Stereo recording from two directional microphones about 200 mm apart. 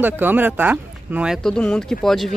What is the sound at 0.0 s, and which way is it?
Speech, 10° right (ahead or behind).